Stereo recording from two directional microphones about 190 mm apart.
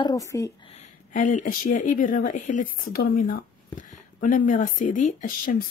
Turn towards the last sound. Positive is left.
turn(degrees=45)  # may be behind; listen again after turning